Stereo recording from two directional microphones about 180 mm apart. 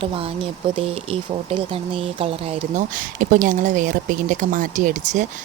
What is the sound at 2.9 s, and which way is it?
Speech, 45° right (ahead or behind).